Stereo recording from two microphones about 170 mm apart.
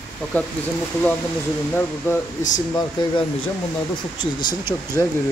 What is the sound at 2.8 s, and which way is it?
Speech, 25° left (ahead or behind).